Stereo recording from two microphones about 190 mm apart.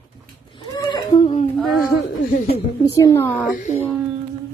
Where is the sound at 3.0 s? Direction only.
15° left (ahead or behind).